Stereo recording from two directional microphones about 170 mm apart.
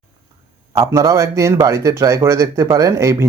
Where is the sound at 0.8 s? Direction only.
15° right (ahead or behind).